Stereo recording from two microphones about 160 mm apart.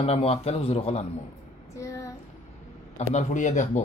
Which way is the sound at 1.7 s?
20° left (ahead or behind).